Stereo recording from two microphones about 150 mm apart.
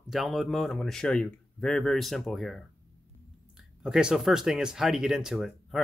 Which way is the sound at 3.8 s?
5° right (ahead or behind).